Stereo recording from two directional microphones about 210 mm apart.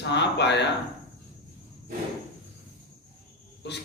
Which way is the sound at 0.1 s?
55° left (ahead or behind).